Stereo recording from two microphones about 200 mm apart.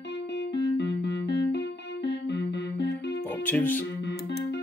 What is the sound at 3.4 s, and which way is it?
Music, 10° left (ahead or behind).